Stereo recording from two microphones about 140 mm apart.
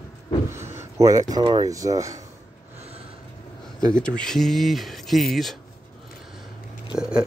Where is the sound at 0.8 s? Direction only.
25° right (ahead or behind).